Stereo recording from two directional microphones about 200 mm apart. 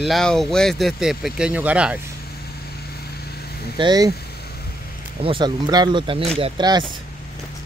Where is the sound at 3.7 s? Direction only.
20° right (ahead or behind).